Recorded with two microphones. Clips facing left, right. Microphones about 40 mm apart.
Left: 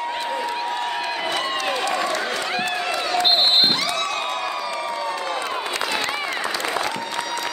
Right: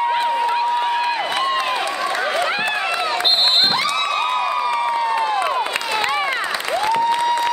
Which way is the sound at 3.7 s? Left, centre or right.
Centre.